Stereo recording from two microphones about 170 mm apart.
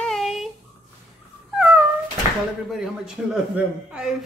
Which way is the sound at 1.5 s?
5° right (ahead or behind).